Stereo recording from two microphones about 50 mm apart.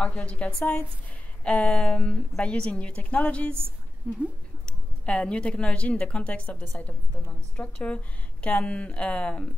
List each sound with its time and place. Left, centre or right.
0.0 s a woman's voice: left
4.1 s speech: centre
4.6 s a woman's voice: left